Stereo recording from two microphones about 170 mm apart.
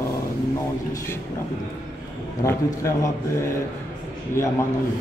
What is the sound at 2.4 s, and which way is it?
Speech, 15° left (ahead or behind).